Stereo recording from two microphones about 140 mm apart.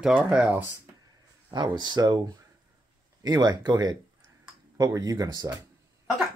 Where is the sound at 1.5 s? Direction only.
30° right (ahead or behind).